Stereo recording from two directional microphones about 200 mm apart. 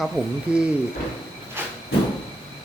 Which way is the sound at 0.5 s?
5° right (ahead or behind).